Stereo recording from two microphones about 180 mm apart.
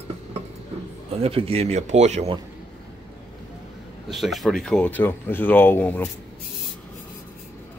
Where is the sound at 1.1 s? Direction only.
35° right (ahead or behind).